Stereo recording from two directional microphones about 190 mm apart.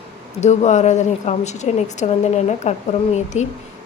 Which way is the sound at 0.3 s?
35° left (ahead or behind).